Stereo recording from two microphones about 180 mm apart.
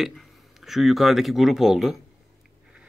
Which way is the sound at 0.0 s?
Centre (ahead or behind).